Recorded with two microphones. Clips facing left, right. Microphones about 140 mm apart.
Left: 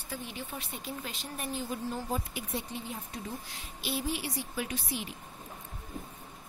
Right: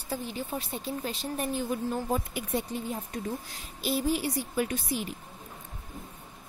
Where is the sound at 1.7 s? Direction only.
55° right (ahead or behind).